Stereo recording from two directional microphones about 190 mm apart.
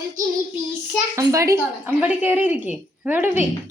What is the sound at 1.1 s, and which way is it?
Speech, 15° right (ahead or behind).